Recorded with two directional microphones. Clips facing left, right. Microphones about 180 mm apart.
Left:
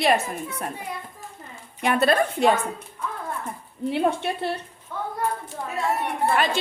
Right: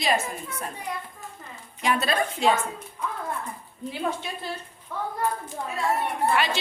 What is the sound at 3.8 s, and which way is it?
Speech, 65° left (ahead or behind).